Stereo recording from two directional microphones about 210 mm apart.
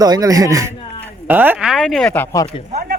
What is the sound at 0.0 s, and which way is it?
Speech, 15° right (ahead or behind).